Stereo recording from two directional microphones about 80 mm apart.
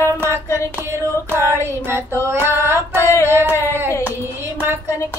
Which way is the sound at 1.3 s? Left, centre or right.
Right.